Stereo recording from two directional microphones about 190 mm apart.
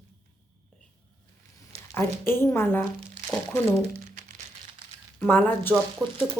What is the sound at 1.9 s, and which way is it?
Speech, 10° left (ahead or behind).